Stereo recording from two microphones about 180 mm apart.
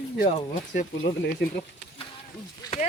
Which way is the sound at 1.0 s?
70° left (ahead or behind).